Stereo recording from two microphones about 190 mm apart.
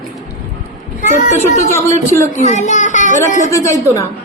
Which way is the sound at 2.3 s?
40° left (ahead or behind).